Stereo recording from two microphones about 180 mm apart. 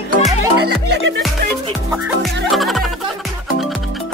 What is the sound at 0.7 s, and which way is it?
Music, 70° right (ahead or behind).